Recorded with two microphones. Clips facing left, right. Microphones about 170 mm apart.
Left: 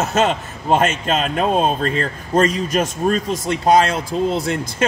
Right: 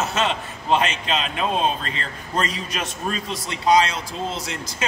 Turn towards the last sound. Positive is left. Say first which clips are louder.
# left 8 dB
turn(degrees=50)  # may be behind; listen again after turning